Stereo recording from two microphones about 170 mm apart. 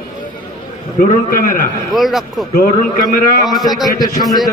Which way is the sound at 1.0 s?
55° left (ahead or behind).